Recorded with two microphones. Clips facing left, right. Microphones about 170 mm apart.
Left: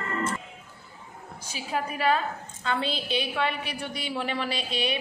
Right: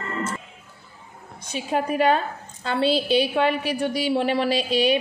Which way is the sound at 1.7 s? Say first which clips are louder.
Right 6 dB; 35° right (ahead or behind).